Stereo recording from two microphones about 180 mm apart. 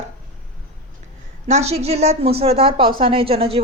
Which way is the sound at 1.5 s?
35° right (ahead or behind).